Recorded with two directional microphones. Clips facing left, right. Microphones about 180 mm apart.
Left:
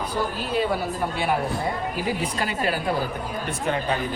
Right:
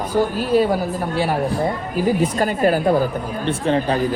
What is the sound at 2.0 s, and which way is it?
Speech, 45° right (ahead or behind).